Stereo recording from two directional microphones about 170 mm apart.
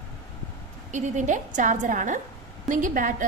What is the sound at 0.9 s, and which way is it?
A woman's voice, 45° right (ahead or behind).